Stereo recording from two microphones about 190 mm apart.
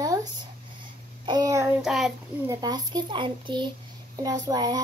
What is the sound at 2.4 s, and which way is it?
Child singing, 20° right (ahead or behind).